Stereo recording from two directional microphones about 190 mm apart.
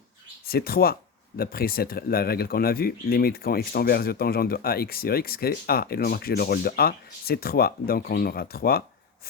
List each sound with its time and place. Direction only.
0.4 s speech: 55° left (ahead or behind)